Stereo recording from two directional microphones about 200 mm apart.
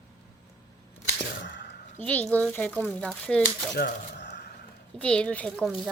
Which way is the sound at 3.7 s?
55° left (ahead or behind).